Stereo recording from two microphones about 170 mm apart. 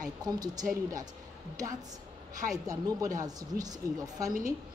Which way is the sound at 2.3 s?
20° right (ahead or behind).